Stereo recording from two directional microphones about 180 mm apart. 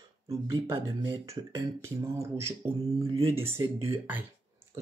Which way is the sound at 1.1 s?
15° right (ahead or behind).